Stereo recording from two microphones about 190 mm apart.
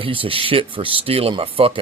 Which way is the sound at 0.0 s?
30° right (ahead or behind).